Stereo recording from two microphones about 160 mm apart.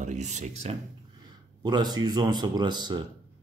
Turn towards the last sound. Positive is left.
turn(degrees=-25)  # may be behind; listen again after turning